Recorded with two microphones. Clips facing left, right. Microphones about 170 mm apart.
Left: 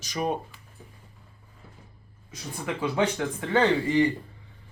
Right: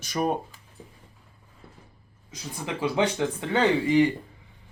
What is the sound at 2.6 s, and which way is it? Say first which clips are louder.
Speech: right 1 dB; 20° right (ahead or behind).